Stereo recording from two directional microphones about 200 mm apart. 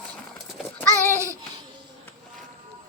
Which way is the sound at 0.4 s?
5° left (ahead or behind).